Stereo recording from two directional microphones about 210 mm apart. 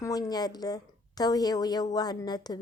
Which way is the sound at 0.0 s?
20° left (ahead or behind).